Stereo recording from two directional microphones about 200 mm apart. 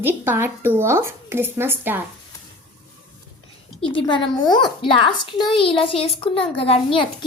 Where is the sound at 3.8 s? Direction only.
25° left (ahead or behind).